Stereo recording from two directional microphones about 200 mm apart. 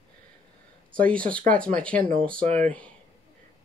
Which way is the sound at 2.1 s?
45° right (ahead or behind).